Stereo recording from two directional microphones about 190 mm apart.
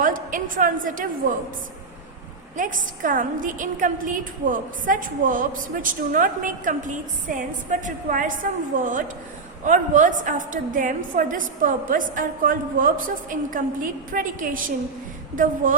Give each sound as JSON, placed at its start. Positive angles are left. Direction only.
{"t": 0.0, "sound": "a woman's voice", "side_deg": -45}
{"t": 2.6, "sound": "a woman's voice", "side_deg": -45}